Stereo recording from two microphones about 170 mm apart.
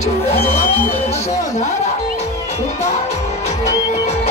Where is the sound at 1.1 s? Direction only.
40° left (ahead or behind).